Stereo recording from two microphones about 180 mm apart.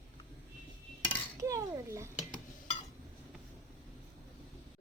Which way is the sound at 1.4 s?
15° right (ahead or behind).